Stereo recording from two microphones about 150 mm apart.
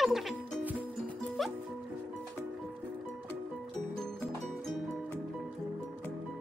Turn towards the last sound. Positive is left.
turn(degrees=0)  # may be behind; listen again after turning